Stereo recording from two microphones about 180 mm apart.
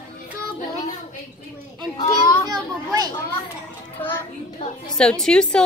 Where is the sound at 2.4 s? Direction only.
20° right (ahead or behind).